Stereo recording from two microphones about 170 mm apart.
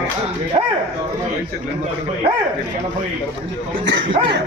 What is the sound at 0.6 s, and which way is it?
Speech, 30° right (ahead or behind).